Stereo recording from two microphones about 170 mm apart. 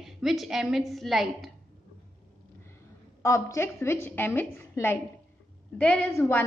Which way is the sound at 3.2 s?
15° left (ahead or behind).